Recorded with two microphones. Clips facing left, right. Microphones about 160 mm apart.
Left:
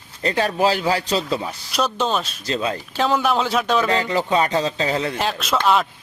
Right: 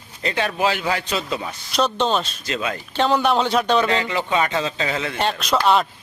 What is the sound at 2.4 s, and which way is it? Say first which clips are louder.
Speech: left 2 dB; 35° left (ahead or behind).